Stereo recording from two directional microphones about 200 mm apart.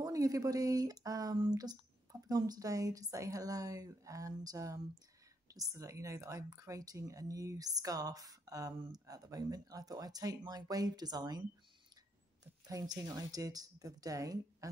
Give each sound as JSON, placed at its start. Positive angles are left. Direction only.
{"t": 0.0, "sound": "speech", "side_deg": -15}
{"t": 12.6, "sound": "speech", "side_deg": -20}